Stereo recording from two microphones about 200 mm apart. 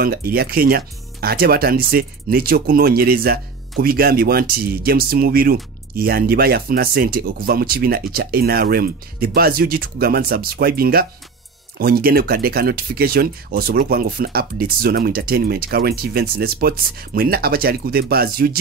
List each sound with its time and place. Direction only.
0.0 s speech: 50° right (ahead or behind)